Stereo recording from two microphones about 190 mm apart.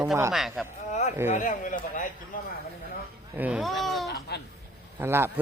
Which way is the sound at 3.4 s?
5° right (ahead or behind).